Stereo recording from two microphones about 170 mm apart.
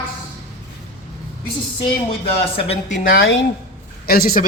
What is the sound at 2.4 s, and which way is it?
Speech, 35° left (ahead or behind).